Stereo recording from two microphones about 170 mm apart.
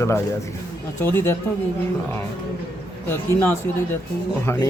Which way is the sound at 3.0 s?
10° left (ahead or behind).